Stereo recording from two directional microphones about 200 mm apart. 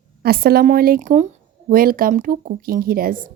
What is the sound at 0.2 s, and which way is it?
Speech, 50° right (ahead or behind).